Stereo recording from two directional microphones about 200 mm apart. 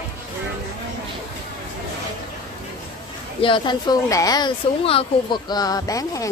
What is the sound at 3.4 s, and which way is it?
Speech, 25° left (ahead or behind).